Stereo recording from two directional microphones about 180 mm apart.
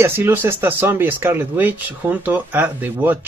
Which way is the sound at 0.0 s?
10° right (ahead or behind).